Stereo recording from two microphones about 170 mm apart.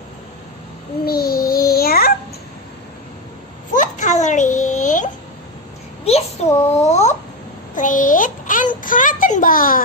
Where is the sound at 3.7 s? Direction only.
45° left (ahead or behind).